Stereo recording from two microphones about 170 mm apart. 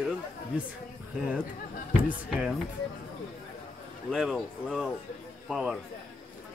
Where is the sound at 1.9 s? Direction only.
5° right (ahead or behind).